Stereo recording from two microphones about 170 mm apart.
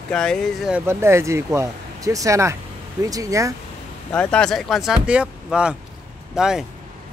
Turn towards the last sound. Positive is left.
turn(degrees=-5)  # may be behind; listen again after turning